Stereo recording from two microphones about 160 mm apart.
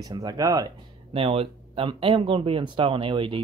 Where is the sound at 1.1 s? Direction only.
35° right (ahead or behind).